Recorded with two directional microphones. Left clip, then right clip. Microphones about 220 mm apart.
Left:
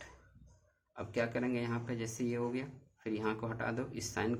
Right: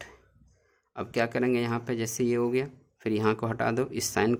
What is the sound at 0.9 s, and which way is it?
Speech, 45° right (ahead or behind).